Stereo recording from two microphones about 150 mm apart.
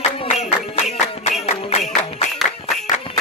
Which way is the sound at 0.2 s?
45° left (ahead or behind).